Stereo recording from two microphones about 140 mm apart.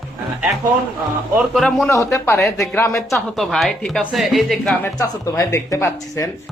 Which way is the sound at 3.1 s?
Centre (ahead or behind).